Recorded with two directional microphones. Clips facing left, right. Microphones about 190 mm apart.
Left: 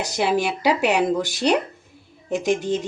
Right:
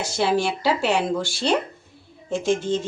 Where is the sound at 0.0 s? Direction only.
15° left (ahead or behind).